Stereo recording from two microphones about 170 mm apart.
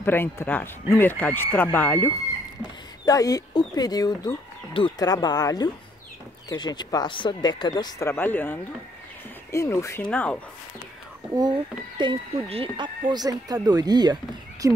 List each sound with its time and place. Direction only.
0.0 s speech: 15° left (ahead or behind)
11.3 s speech: 25° right (ahead or behind)